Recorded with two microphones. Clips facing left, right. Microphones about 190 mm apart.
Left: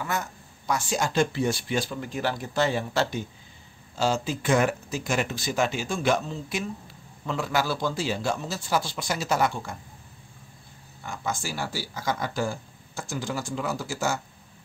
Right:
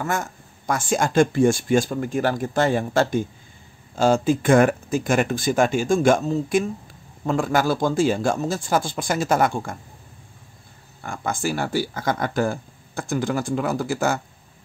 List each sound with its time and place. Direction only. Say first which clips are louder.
0.0 s speech: right 5 dB; 45° right (ahead or behind)
11.0 s speech: right 5 dB; 55° right (ahead or behind)